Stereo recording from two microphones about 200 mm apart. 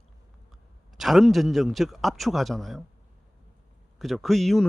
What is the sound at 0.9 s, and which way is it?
A man's voice, centre (ahead or behind).